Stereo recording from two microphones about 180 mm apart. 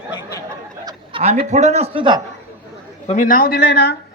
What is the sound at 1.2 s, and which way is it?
Speech, 40° right (ahead or behind).